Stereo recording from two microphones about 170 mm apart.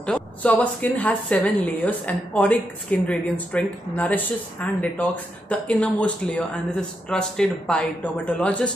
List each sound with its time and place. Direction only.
0.0 s a woman's voice: 5° left (ahead or behind)